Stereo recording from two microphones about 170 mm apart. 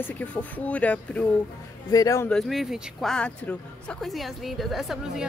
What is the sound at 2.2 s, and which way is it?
Speech, centre (ahead or behind).